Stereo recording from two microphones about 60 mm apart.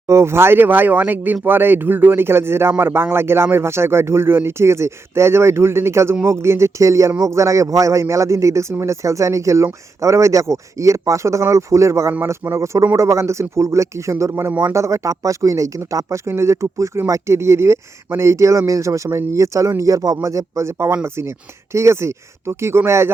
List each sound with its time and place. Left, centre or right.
0.1 s speech: right